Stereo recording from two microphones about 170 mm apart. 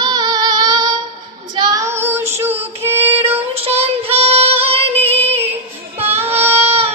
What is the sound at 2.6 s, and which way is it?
Music, 15° right (ahead or behind).